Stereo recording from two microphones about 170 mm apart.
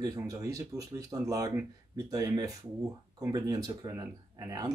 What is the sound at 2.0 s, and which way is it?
Speech, 20° right (ahead or behind).